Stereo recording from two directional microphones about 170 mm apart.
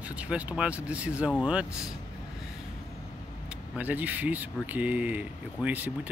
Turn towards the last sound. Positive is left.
turn(degrees=-10)  # may be behind; listen again after turning